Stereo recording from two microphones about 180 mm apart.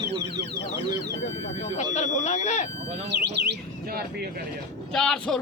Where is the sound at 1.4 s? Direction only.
40° left (ahead or behind).